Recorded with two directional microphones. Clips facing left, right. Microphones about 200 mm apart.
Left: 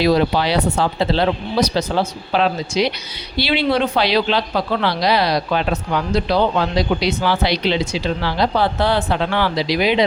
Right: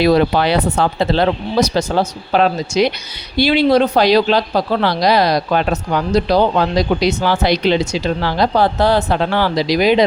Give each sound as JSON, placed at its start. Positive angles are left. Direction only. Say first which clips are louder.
{"t": 0.0, "sound": "speech", "louder": "right 3 dB", "side_deg": -55}